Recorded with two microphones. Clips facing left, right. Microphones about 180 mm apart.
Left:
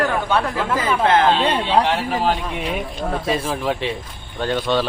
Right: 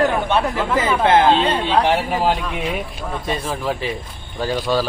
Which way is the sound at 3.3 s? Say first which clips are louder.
Even; centre (ahead or behind).